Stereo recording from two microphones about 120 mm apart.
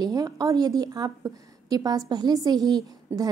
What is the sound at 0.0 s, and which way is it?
A woman's voice, 30° right (ahead or behind).